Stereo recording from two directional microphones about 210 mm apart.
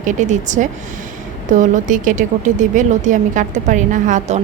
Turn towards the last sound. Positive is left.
turn(degrees=-35)  # may be behind; listen again after turning